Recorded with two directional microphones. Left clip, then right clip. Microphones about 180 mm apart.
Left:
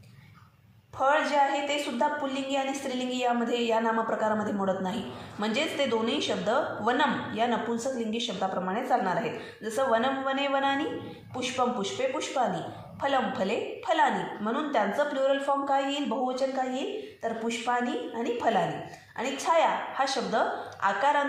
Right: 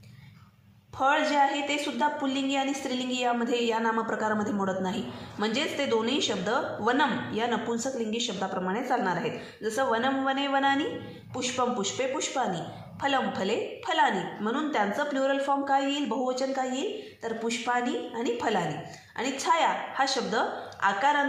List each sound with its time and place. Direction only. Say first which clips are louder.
0.9 s a woman's voice: even; 35° right (ahead or behind)